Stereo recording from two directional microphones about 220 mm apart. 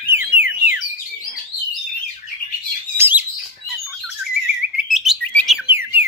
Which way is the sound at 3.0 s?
10° right (ahead or behind).